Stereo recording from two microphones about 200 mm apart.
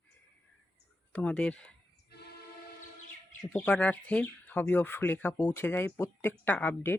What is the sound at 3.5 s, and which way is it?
Speech, 5° left (ahead or behind).